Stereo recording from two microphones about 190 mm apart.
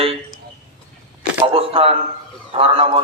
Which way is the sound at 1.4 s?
30° right (ahead or behind).